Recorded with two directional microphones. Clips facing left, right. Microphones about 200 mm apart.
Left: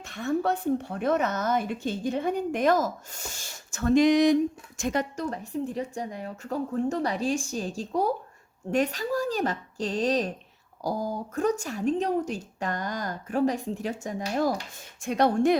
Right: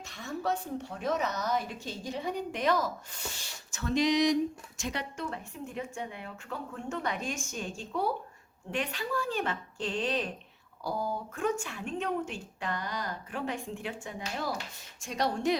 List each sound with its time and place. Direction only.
0.1 s a woman's voice: 55° left (ahead or behind)
15.0 s speech: 55° left (ahead or behind)